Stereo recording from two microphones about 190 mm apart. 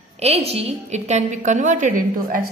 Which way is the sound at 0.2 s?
35° right (ahead or behind).